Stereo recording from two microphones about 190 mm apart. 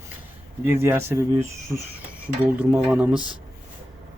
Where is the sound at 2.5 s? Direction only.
Centre (ahead or behind).